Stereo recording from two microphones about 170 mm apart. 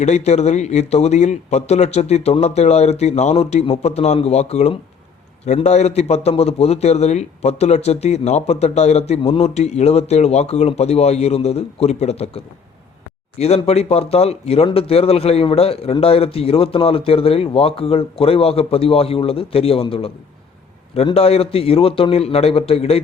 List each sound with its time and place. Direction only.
0.0 s a man's voice: 40° left (ahead or behind)
13.4 s a man's voice: 40° left (ahead or behind)